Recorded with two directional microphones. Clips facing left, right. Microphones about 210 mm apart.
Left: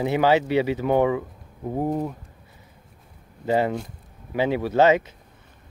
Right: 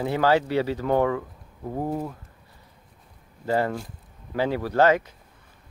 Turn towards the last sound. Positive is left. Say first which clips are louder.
# left 2 dB
turn(degrees=25)  # may be behind; listen again after turning